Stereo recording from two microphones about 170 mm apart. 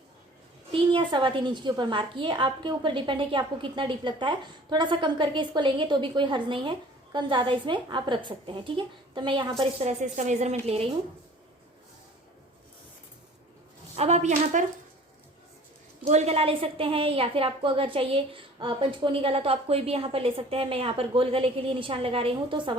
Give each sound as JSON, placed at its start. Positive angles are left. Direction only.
{"t": 0.7, "sound": "a woman's voice", "side_deg": -30}
{"t": 10.0, "sound": "a woman's voice", "side_deg": -45}
{"t": 13.9, "sound": "a woman's voice", "side_deg": -40}
{"t": 16.0, "sound": "a woman's voice", "side_deg": -40}